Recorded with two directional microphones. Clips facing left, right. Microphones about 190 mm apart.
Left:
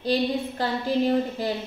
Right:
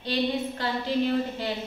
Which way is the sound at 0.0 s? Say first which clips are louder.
Left 3 dB; 40° left (ahead or behind).